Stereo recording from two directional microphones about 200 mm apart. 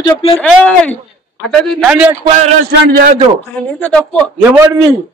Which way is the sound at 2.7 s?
50° right (ahead or behind).